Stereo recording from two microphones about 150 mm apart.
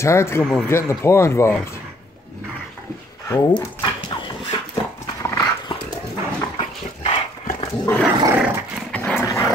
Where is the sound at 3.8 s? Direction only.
30° left (ahead or behind).